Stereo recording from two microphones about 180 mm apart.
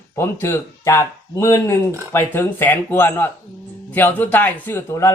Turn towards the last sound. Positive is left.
turn(degrees=15)  # may be behind; listen again after turning